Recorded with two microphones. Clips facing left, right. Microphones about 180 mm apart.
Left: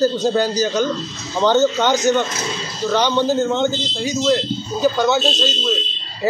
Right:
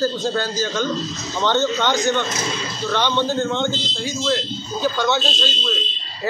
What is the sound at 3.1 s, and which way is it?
Speech, 10° left (ahead or behind).